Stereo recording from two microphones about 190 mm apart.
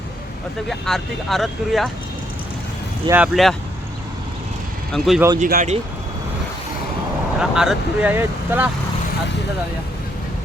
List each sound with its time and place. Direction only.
0.7 s speech: centre (ahead or behind)
3.4 s speech: centre (ahead or behind)
4.9 s speech: centre (ahead or behind)
5.4 s speech: 45° right (ahead or behind)
7.3 s speech: 5° right (ahead or behind)